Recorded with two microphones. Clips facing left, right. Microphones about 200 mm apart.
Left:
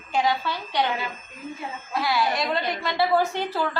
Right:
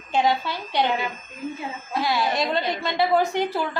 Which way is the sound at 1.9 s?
20° right (ahead or behind).